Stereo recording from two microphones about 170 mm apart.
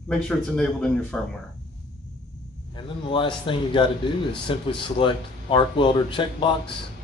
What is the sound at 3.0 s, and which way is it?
Speech, 30° left (ahead or behind).